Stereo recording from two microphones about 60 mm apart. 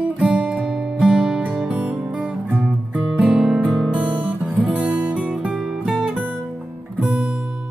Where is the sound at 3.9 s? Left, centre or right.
Right.